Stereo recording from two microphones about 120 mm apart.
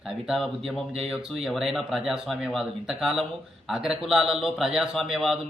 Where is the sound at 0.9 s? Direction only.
Centre (ahead or behind).